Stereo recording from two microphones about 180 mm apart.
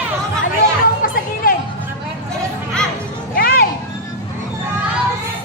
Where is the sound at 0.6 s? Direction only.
55° left (ahead or behind).